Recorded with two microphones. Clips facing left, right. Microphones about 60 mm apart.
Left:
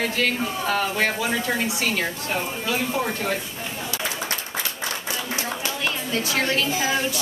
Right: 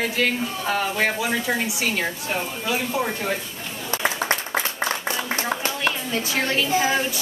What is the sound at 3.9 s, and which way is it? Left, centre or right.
Applause, right.